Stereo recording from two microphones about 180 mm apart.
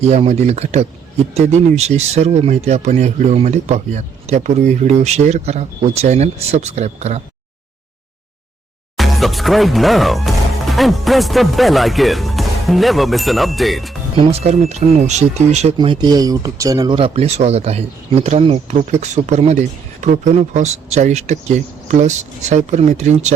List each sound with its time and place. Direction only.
0.0 s speech: 40° right (ahead or behind)
9.0 s speech: centre (ahead or behind)
14.2 s speech: 35° right (ahead or behind)